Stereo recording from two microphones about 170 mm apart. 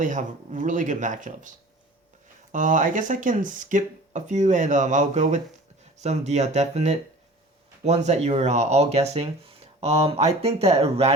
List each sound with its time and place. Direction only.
0.0 s speech: 50° right (ahead or behind)